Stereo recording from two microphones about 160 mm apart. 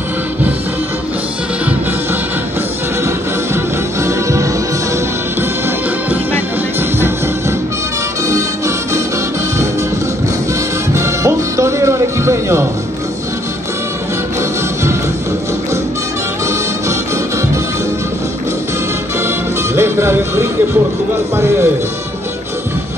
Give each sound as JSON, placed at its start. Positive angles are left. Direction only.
{"t": 3.5, "sound": "music", "side_deg": -20}
{"t": 6.0, "sound": "music", "side_deg": -10}
{"t": 10.9, "sound": "music", "side_deg": -20}
{"t": 19.2, "sound": "music", "side_deg": -15}